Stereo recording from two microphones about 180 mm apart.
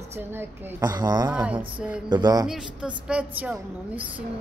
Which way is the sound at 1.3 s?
5° right (ahead or behind).